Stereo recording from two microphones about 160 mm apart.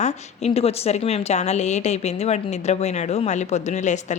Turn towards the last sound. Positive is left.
turn(degrees=45)  # may be behind; listen again after turning